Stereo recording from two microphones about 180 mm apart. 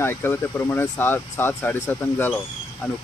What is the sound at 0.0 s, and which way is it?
Speech, 15° left (ahead or behind).